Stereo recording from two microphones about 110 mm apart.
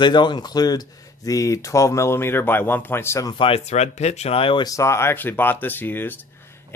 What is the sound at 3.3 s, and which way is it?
Speech, 55° left (ahead or behind).